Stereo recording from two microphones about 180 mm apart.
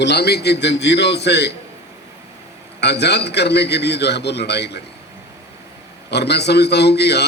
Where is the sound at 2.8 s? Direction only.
70° left (ahead or behind).